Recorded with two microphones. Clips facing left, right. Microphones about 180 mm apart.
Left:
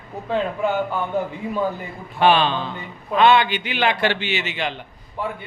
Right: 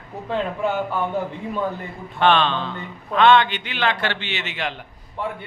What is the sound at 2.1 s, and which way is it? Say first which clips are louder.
A man's voice: left 1 dB; 5° left (ahead or behind).